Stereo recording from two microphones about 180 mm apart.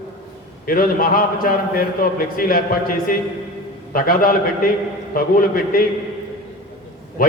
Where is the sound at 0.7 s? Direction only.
50° left (ahead or behind).